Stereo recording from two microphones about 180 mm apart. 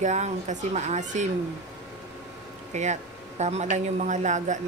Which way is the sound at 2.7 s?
40° right (ahead or behind).